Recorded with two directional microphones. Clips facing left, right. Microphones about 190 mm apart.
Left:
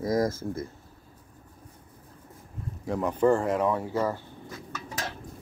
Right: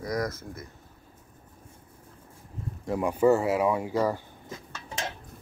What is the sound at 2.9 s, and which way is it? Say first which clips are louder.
Speech: right 1 dB; 10° right (ahead or behind).